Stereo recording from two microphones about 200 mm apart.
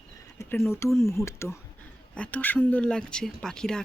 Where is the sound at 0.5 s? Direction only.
10° left (ahead or behind).